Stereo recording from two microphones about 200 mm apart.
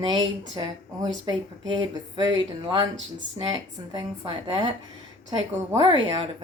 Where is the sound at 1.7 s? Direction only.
20° right (ahead or behind).